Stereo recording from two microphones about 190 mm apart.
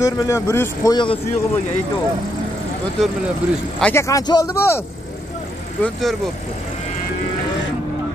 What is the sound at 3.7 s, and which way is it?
Speech, 10° left (ahead or behind).